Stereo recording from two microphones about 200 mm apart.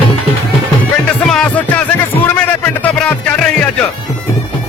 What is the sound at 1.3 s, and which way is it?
Music, 5° left (ahead or behind).